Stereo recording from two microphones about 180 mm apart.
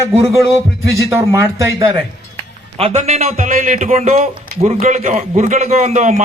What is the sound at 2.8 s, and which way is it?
A man's voice, 35° right (ahead or behind).